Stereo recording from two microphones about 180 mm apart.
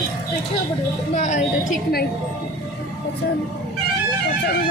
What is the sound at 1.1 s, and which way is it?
Speech, 40° left (ahead or behind).